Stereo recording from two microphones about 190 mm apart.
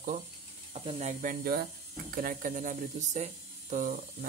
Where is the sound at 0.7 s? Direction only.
35° right (ahead or behind).